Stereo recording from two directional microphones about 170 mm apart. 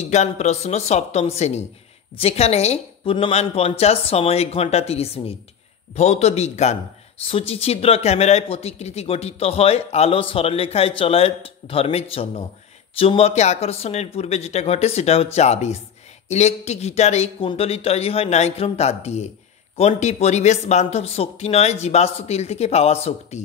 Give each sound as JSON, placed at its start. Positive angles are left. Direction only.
{"t": 0.1, "sound": "speech", "side_deg": 40}